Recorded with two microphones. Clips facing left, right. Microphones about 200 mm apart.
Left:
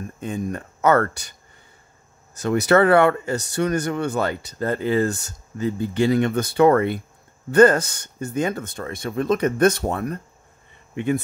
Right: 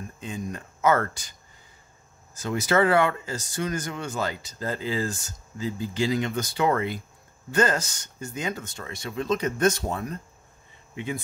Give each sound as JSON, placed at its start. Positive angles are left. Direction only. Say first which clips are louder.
{"t": 0.2, "sound": "speech", "louder": "left 7 dB", "side_deg": 55}
{"t": 2.3, "sound": "speech", "louder": "left 6 dB", "side_deg": 65}